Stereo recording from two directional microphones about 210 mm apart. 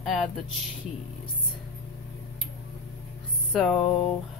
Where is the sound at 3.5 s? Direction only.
Centre (ahead or behind).